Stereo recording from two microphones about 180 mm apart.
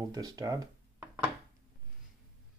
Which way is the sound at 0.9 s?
10° right (ahead or behind).